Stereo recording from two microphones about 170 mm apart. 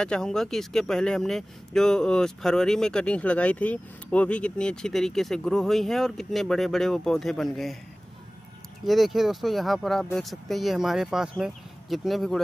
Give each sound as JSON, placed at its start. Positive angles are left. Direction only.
{"t": 0.0, "sound": "speech", "side_deg": 5}
{"t": 8.8, "sound": "speech", "side_deg": 0}